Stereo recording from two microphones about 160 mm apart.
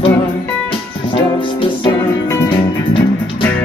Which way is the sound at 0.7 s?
30° left (ahead or behind).